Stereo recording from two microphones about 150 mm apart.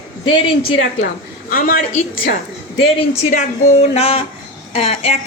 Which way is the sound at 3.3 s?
55° left (ahead or behind).